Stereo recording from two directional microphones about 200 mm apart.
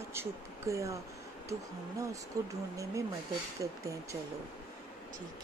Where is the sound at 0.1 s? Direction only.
15° right (ahead or behind).